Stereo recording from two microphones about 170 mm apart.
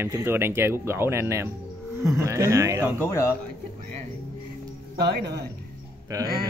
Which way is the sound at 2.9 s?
15° left (ahead or behind).